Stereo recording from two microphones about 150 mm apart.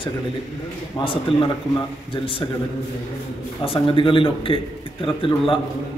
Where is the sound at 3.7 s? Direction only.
35° left (ahead or behind).